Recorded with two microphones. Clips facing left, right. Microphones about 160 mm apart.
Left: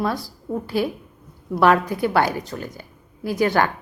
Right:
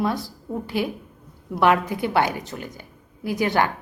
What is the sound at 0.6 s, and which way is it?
A woman's voice, 15° right (ahead or behind).